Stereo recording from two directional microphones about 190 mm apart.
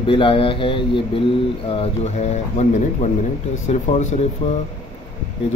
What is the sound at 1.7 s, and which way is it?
Mantra, 35° left (ahead or behind).